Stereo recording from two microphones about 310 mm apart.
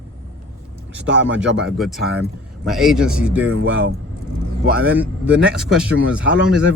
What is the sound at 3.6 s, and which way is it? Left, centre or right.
Speech, right.